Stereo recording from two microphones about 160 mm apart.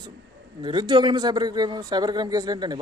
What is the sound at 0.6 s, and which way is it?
Speech, 30° right (ahead or behind).